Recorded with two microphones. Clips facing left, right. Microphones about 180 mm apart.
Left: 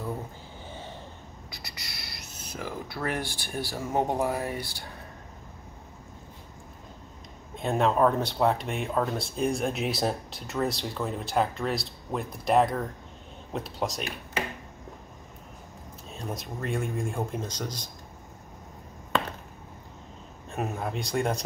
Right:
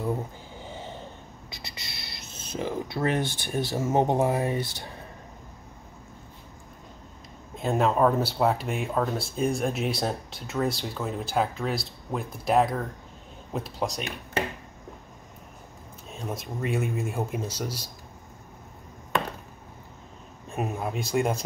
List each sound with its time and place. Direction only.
0.7 s vehicle: 15° right (ahead or behind)
1.5 s speech: 25° right (ahead or behind)
7.5 s speech: centre (ahead or behind)
16.1 s speech: 5° right (ahead or behind)
20.5 s speech: centre (ahead or behind)